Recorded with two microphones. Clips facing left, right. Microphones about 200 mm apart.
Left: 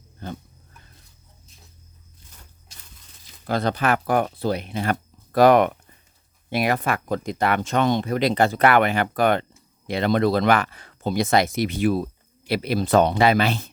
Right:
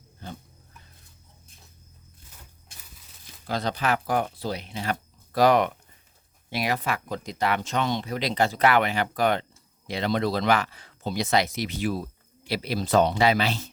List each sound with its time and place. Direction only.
0.2 s wild animals: 55° left (ahead or behind)
3.4 s speech: 55° left (ahead or behind)